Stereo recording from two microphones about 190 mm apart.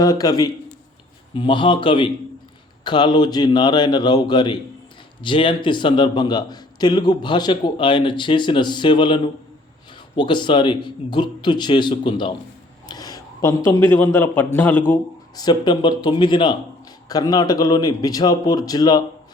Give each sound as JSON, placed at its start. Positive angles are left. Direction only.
{"t": 0.0, "sound": "a man's voice", "side_deg": 20}
{"t": 15.4, "sound": "a man's voice", "side_deg": 20}